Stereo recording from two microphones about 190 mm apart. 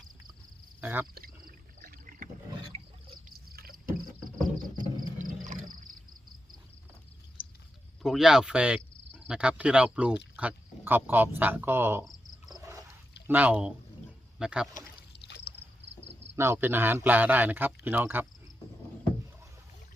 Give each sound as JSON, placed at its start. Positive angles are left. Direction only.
{"t": 0.8, "sound": "speech", "side_deg": -10}
{"t": 1.1, "sound": "a sound", "side_deg": -50}
{"t": 3.5, "sound": "rowboat", "side_deg": -50}
{"t": 4.7, "sound": "frog", "side_deg": -20}
{"t": 5.2, "sound": "wild animals", "side_deg": -45}
{"t": 8.0, "sound": "speech", "side_deg": 0}
{"t": 12.0, "sound": "cricket", "side_deg": 0}
{"t": 13.2, "sound": "a man's voice", "side_deg": -10}
{"t": 14.8, "sound": "a sound", "side_deg": 55}
{"t": 16.3, "sound": "a man's voice", "side_deg": -15}